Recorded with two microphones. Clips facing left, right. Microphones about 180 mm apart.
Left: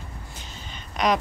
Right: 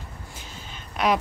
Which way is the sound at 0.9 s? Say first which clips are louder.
Even; 5° right (ahead or behind).